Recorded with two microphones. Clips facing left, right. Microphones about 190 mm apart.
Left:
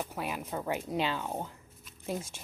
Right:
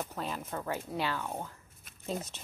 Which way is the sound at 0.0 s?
10° left (ahead or behind).